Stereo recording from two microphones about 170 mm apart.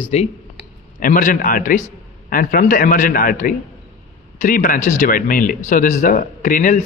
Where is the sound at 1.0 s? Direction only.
50° left (ahead or behind).